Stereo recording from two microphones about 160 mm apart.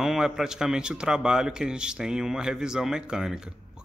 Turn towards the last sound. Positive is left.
turn(degrees=-5)  # may be behind; listen again after turning